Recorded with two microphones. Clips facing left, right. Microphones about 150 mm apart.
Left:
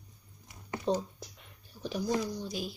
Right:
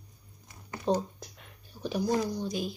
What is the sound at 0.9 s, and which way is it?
Speech, 45° right (ahead or behind).